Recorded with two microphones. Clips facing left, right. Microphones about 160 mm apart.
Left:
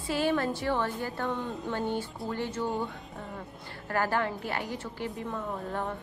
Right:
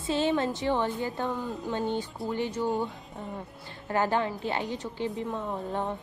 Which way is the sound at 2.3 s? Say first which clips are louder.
Right 3 dB; 15° right (ahead or behind).